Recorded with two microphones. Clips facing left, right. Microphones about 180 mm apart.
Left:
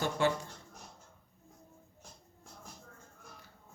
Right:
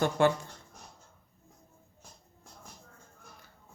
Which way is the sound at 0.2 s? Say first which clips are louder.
Right 5 dB; 55° right (ahead or behind).